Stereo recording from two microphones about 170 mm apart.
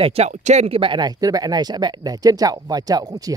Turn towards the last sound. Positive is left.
turn(degrees=-20)  # may be behind; listen again after turning